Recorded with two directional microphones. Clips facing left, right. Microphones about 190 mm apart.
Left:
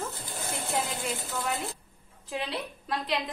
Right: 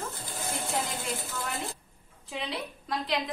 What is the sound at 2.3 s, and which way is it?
Speech, centre (ahead or behind).